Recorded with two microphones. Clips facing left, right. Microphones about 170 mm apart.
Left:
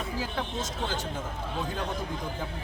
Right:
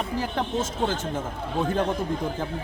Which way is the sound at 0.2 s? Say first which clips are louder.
Right 7 dB; 50° right (ahead or behind).